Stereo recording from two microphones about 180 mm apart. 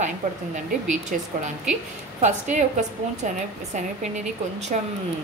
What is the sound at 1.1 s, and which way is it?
A woman's voice, 45° right (ahead or behind).